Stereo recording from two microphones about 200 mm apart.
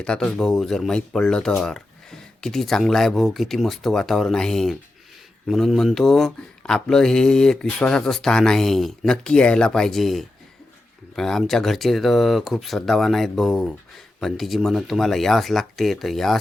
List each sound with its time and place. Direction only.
0.0 s speech: 5° left (ahead or behind)